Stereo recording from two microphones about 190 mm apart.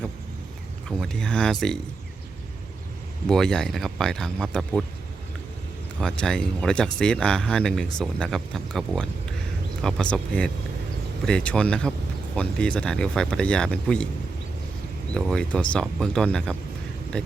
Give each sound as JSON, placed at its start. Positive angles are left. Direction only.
{"t": 0.9, "sound": "speech", "side_deg": 5}
{"t": 3.2, "sound": "speech", "side_deg": 0}
{"t": 6.0, "sound": "speech", "side_deg": 5}
{"t": 15.1, "sound": "speech", "side_deg": 5}